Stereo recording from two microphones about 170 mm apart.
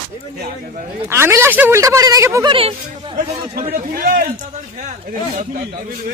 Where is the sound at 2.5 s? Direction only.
30° right (ahead or behind).